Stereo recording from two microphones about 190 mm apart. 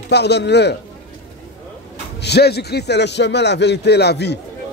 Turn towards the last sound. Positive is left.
turn(degrees=60)  # may be behind; listen again after turning